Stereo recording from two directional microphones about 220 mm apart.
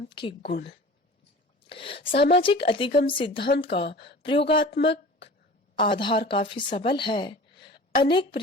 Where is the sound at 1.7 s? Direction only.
25° left (ahead or behind).